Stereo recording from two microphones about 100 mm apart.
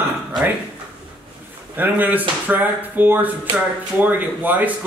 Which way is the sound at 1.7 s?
20° right (ahead or behind).